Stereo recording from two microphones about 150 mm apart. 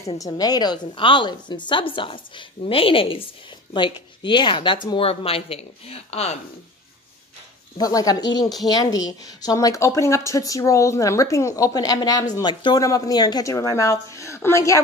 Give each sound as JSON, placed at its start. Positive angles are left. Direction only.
{"t": 0.2, "sound": "a woman's voice", "side_deg": 25}
{"t": 7.7, "sound": "a woman's voice", "side_deg": 25}